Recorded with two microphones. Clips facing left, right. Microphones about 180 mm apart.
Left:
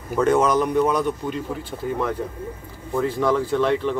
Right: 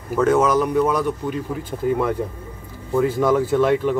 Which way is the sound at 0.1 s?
5° right (ahead or behind).